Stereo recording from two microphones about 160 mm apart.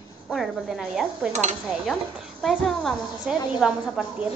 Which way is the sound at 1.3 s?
45° right (ahead or behind).